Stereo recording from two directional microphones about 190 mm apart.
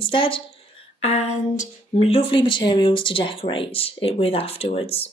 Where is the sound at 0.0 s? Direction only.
25° left (ahead or behind).